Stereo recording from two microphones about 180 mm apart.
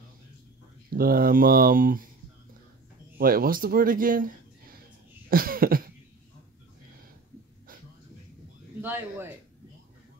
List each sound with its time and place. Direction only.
0.8 s speech: 55° right (ahead or behind)
3.2 s speech: 55° right (ahead or behind)
5.3 s cough: 55° right (ahead or behind)
8.8 s speech: 10° right (ahead or behind)